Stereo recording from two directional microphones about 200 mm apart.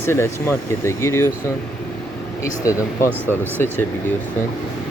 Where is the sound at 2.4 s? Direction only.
15° left (ahead or behind).